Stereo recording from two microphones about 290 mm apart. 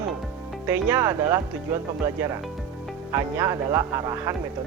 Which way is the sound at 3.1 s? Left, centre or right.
Centre.